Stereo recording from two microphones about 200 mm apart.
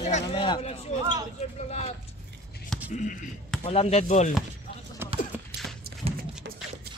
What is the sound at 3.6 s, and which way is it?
Speech, 30° left (ahead or behind).